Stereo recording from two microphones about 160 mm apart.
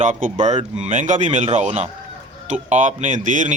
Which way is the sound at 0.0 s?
50° right (ahead or behind).